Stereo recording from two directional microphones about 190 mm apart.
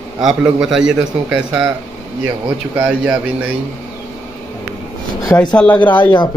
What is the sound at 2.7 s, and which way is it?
Speech, 10° right (ahead or behind).